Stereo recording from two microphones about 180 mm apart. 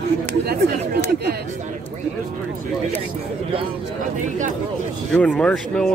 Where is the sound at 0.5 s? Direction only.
60° right (ahead or behind).